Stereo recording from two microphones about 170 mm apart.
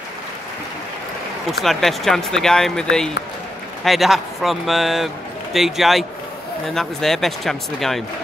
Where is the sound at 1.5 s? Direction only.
Centre (ahead or behind).